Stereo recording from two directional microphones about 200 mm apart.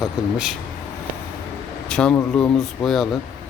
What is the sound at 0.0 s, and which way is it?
Speech, centre (ahead or behind).